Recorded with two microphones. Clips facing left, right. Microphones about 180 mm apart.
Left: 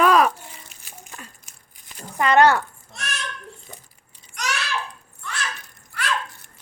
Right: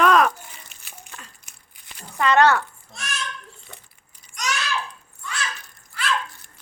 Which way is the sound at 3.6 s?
40° left (ahead or behind).